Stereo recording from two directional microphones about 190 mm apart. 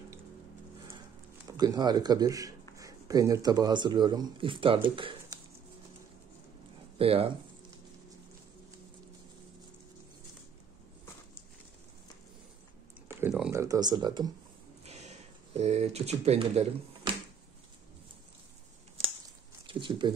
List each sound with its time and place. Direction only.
1.5 s speech: 20° right (ahead or behind)
7.0 s speech: 30° right (ahead or behind)
13.2 s a sound: 10° right (ahead or behind)
14.9 s speech: 35° right (ahead or behind)
19.7 s speech: 25° right (ahead or behind)